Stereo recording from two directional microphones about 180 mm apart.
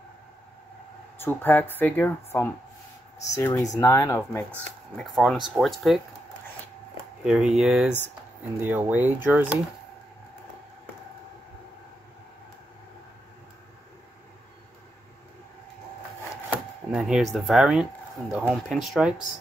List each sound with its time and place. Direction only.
1.2 s speech: 10° left (ahead or behind)
4.9 s speech: 5° left (ahead or behind)
7.2 s speech: 5° right (ahead or behind)
16.4 s speech: 5° right (ahead or behind)